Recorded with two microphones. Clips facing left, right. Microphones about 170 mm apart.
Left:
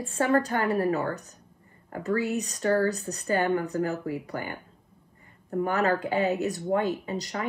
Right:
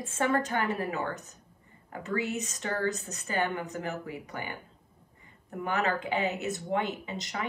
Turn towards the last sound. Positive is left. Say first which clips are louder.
# left 5 dB
turn(degrees=35)  # may be behind; listen again after turning